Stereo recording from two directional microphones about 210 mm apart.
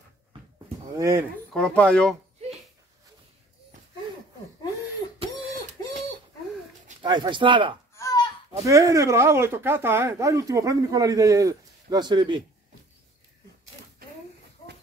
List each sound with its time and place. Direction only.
0.9 s speech: 15° right (ahead or behind)
1.5 s speech: 5° left (ahead or behind)
5.3 s a sound: 15° left (ahead or behind)
7.0 s speech: 20° right (ahead or behind)
7.9 s a sound: 15° left (ahead or behind)
8.6 s speech: 15° right (ahead or behind)